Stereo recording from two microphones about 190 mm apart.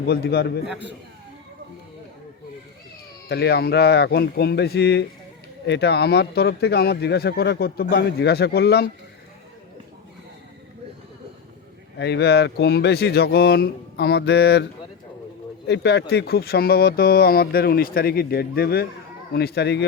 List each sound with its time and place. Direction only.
0.1 s speech: 55° left (ahead or behind)
0.7 s a man's voice: 10° right (ahead or behind)
3.2 s speech: 60° left (ahead or behind)
11.9 s speech: 60° left (ahead or behind)
15.6 s speech: 65° left (ahead or behind)